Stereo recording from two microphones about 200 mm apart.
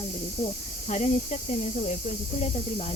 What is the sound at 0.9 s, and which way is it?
Speech, 35° left (ahead or behind).